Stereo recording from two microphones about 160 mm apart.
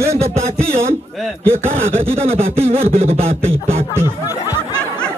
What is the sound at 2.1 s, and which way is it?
Speech, 40° right (ahead or behind).